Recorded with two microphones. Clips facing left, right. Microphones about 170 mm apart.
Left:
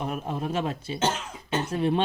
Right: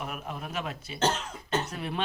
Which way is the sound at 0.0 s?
30° left (ahead or behind).